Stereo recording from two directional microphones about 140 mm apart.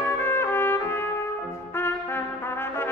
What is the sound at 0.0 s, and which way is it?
Trumpet, 15° left (ahead or behind).